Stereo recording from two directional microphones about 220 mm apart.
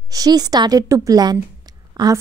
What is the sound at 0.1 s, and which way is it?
A woman's voice, 15° right (ahead or behind).